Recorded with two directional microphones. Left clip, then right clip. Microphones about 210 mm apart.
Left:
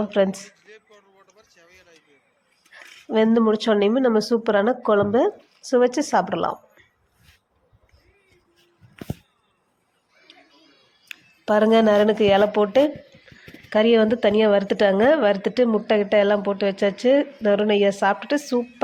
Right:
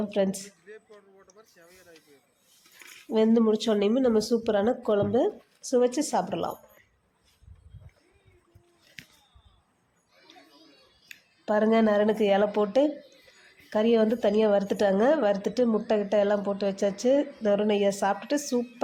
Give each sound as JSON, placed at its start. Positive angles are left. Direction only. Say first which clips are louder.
{"t": 0.0, "sound": "speech", "louder": "left 7 dB", "side_deg": 5}
{"t": 1.4, "sound": "a sound", "louder": "left 1 dB", "side_deg": -40}
{"t": 2.7, "sound": "a woman's voice", "louder": "left 5 dB", "side_deg": 10}
{"t": 11.1, "sound": "a woman's voice", "louder": "left 6 dB", "side_deg": 15}